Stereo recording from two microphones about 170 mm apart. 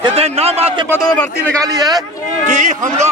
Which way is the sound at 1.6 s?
20° right (ahead or behind).